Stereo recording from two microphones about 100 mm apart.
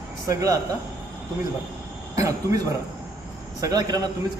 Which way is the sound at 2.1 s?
30° right (ahead or behind).